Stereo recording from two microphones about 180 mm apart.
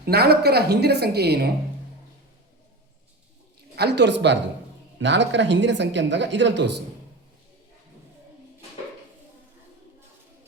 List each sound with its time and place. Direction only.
0.0 s a woman's voice: 60° right (ahead or behind)
3.8 s speech: 70° right (ahead or behind)